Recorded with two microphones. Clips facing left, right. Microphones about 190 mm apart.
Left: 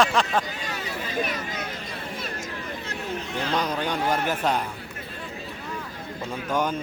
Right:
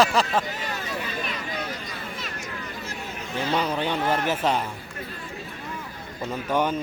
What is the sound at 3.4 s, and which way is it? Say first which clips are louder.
Speech: right 2 dB; 10° right (ahead or behind).